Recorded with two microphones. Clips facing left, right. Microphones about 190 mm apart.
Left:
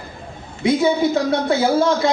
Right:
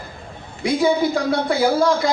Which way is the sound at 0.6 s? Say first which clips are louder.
Left 1 dB; 20° left (ahead or behind).